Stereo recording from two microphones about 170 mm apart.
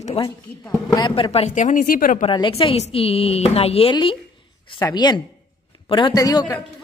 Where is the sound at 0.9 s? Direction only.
25° left (ahead or behind); by 2.2 s 55° left (ahead or behind).